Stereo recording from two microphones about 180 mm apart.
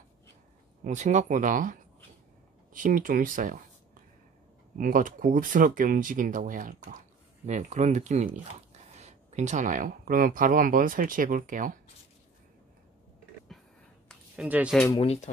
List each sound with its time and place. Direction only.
0.8 s speech: 40° right (ahead or behind)
14.0 s a sound: 5° right (ahead or behind)
15.0 s speech: 35° left (ahead or behind)